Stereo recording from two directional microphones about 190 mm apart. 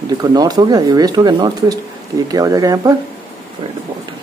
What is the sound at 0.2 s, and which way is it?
Speech, 20° right (ahead or behind).